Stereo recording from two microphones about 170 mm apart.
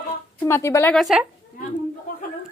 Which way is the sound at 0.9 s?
Centre (ahead or behind).